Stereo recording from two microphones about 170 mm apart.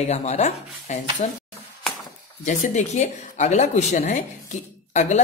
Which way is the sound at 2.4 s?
45° left (ahead or behind).